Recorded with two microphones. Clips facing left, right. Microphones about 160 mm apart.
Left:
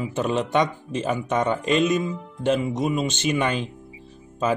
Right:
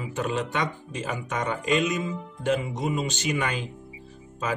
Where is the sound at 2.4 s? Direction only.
25° left (ahead or behind).